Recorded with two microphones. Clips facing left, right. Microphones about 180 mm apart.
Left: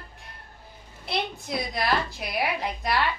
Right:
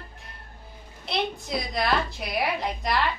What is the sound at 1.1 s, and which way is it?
A woman's voice, centre (ahead or behind).